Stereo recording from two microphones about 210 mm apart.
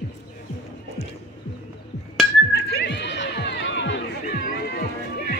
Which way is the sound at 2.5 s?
50° left (ahead or behind).